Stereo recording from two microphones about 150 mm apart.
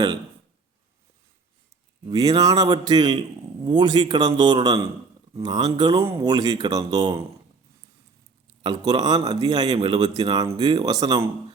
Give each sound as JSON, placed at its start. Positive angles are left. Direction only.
{"t": 2.0, "sound": "a man's voice", "side_deg": -25}
{"t": 8.6, "sound": "a man's voice", "side_deg": -30}